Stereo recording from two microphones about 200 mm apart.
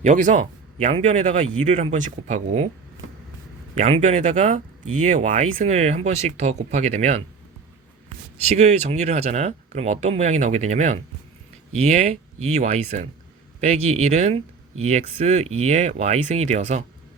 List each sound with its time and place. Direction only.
0.0 s speech: 40° right (ahead or behind)
3.8 s speech: 35° right (ahead or behind)
8.4 s speech: 35° right (ahead or behind)